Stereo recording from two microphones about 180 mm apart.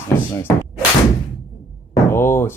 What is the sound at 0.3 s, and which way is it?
Speech, 15° left (ahead or behind).